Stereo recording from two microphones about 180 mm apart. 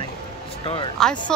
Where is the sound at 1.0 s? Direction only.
5° left (ahead or behind).